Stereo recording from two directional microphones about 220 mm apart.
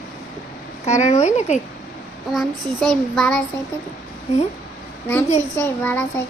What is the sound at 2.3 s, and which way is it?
Child singing, centre (ahead or behind).